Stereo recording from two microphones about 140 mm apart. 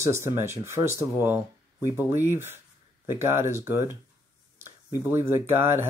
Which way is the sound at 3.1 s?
20° right (ahead or behind).